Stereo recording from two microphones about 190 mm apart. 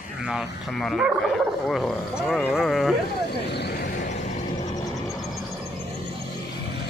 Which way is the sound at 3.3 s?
60° left (ahead or behind).